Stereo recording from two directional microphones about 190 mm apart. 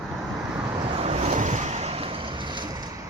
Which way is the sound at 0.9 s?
35° right (ahead or behind).